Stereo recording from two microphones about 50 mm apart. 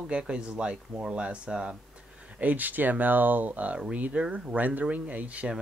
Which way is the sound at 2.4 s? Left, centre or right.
Right.